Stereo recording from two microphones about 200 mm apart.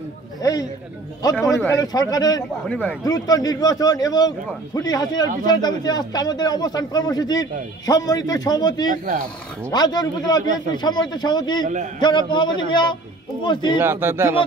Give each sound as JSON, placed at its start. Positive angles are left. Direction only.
{"t": 0.4, "sound": "a sound", "side_deg": 20}
{"t": 1.4, "sound": "a man's voice", "side_deg": 15}
{"t": 8.9, "sound": "speech", "side_deg": -40}
{"t": 9.7, "sound": "a man's voice", "side_deg": 20}
{"t": 11.6, "sound": "speech", "side_deg": -40}
{"t": 12.0, "sound": "a man's voice", "side_deg": 25}
{"t": 13.7, "sound": "speech", "side_deg": -10}